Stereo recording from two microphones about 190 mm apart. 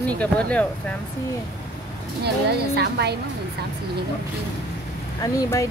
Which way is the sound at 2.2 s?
60° right (ahead or behind).